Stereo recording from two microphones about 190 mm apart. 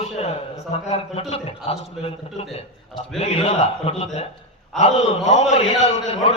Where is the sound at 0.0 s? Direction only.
35° left (ahead or behind).